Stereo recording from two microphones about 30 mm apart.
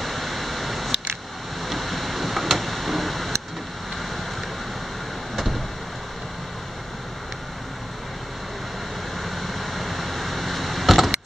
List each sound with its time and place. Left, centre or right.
0.0 s a sound: centre
5.3 s vehicle: centre
9.2 s vehicle: centre